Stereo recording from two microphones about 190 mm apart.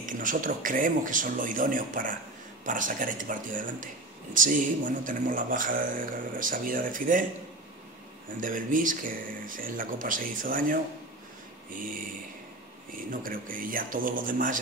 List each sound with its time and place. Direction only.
0.0 s speech: 45° right (ahead or behind)
8.4 s speech: 45° right (ahead or behind)